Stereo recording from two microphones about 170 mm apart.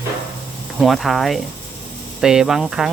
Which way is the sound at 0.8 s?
Centre (ahead or behind).